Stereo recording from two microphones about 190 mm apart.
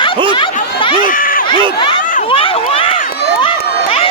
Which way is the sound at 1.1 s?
45° left (ahead or behind).